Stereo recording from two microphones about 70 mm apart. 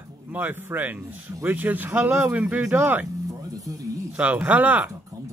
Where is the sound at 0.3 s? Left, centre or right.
Right.